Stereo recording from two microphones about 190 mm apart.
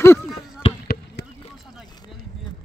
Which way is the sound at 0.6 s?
30° left (ahead or behind).